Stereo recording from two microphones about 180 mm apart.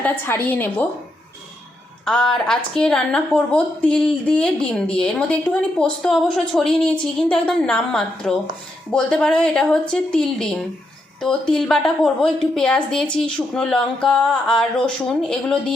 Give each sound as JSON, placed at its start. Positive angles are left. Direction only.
{"t": 0.0, "sound": "a woman's voice", "side_deg": 10}
{"t": 2.0, "sound": "a woman's voice", "side_deg": 5}